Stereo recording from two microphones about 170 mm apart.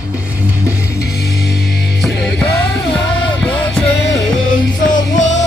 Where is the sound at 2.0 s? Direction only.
5° left (ahead or behind).